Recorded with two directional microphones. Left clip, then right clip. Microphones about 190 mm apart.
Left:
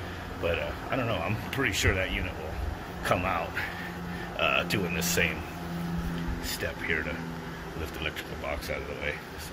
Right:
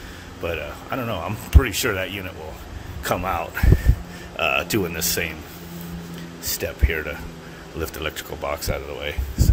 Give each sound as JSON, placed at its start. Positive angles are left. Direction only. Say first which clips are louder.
{"t": 0.5, "sound": "speech", "louder": "right 3 dB", "side_deg": -30}
{"t": 6.6, "sound": "speech", "louder": "right 4 dB", "side_deg": -35}